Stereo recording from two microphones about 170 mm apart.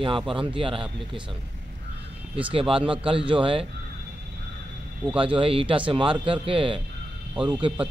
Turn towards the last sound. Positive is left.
turn(degrees=-10)  # may be behind; listen again after turning